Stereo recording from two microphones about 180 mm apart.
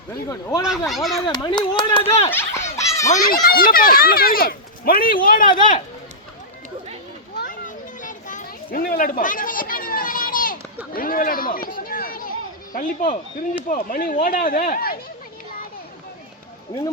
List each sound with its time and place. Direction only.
0.6 s speech: centre (ahead or behind)
1.3 s speech: 25° left (ahead or behind)
2.3 s baby laughter: 15° left (ahead or behind)
3.5 s speech: 55° left (ahead or behind)
8.0 s children playing: 45° left (ahead or behind)
10.9 s a sound: 50° left (ahead or behind)
12.7 s speech: 50° left (ahead or behind)
16.7 s speech: 20° left (ahead or behind)